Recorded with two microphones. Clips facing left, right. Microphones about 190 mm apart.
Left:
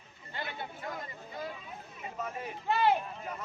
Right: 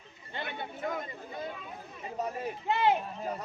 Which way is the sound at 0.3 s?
25° right (ahead or behind).